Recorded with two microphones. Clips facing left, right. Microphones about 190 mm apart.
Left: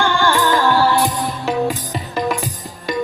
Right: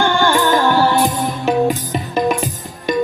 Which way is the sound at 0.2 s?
20° right (ahead or behind).